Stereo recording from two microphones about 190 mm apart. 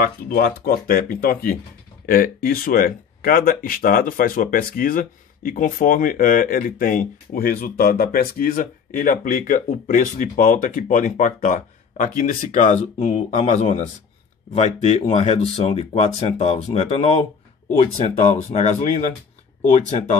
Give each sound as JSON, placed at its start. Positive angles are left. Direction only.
{"t": 0.0, "sound": "speech", "side_deg": 55}